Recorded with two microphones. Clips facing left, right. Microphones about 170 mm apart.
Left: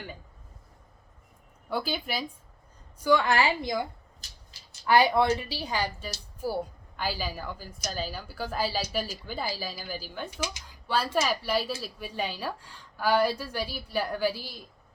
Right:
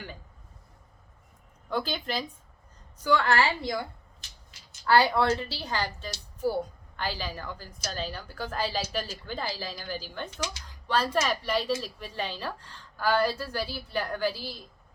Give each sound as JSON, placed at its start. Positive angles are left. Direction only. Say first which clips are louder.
{"t": 1.7, "sound": "a woman's voice", "louder": "even", "side_deg": 10}
{"t": 4.9, "sound": "a woman's voice", "louder": "left 1 dB", "side_deg": 15}